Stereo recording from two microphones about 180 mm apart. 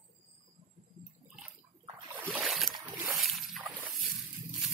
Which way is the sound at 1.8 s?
15° right (ahead or behind).